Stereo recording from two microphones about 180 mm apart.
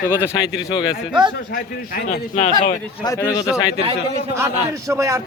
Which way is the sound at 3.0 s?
20° left (ahead or behind).